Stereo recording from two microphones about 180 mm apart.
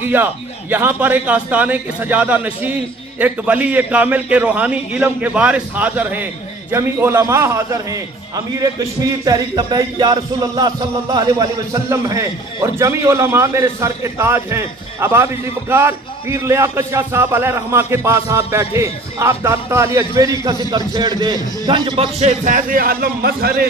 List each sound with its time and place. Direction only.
0.1 s a man's voice: 10° right (ahead or behind); by 23.7 s 60° right (ahead or behind)